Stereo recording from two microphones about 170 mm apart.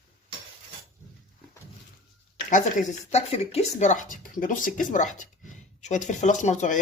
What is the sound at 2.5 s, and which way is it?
Speech, 45° left (ahead or behind).